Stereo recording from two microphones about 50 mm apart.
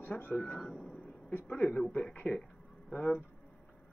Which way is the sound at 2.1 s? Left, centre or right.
Left.